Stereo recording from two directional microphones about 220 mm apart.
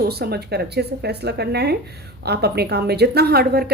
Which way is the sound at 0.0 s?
45° right (ahead or behind).